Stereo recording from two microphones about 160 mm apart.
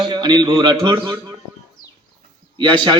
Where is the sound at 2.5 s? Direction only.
30° right (ahead or behind).